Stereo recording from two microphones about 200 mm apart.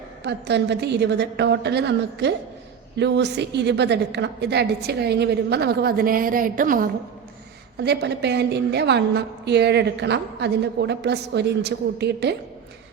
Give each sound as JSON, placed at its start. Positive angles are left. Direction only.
{"t": 0.2, "sound": "a woman's voice", "side_deg": -55}
{"t": 7.8, "sound": "a woman's voice", "side_deg": -55}